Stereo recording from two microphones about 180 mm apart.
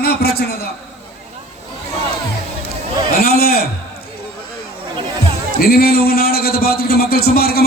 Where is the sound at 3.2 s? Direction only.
60° left (ahead or behind).